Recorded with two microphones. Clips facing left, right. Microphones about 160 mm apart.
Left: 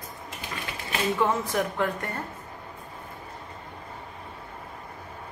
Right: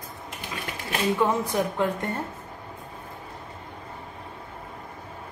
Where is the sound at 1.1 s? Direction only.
15° right (ahead or behind).